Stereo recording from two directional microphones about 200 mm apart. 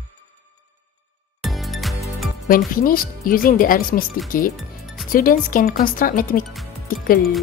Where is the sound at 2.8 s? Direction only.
45° left (ahead or behind).